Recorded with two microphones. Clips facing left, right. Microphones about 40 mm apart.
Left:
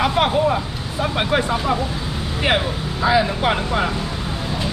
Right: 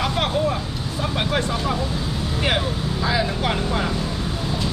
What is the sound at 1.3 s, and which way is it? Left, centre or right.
Speech, centre.